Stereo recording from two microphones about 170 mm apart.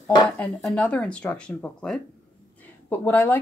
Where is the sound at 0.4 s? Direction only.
10° left (ahead or behind).